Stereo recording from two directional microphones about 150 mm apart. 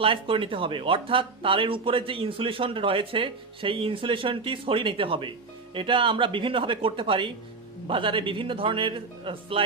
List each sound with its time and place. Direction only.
0.0 s speech: 35° right (ahead or behind)